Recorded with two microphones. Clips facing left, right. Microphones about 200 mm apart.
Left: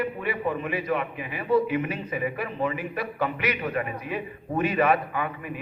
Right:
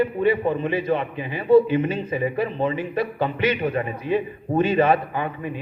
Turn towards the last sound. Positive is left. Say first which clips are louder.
# right 3 dB
turn(degrees=-30)  # may be behind; listen again after turning